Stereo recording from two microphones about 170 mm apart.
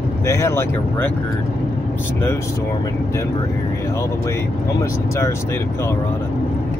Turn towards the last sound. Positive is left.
turn(degrees=15)  # may be behind; listen again after turning